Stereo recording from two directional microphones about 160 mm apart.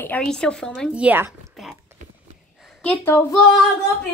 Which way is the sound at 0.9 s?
10° right (ahead or behind).